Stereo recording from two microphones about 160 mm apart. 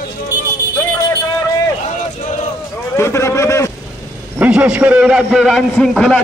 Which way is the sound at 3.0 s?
15° left (ahead or behind).